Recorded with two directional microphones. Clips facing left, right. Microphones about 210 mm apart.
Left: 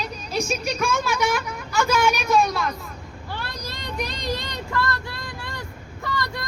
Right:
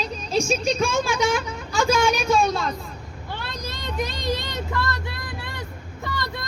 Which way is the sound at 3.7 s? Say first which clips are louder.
Right 3 dB; 20° right (ahead or behind).